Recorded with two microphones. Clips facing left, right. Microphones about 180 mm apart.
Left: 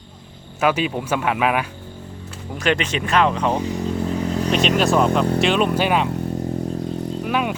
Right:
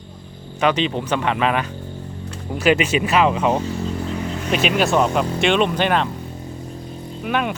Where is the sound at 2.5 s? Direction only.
5° right (ahead or behind).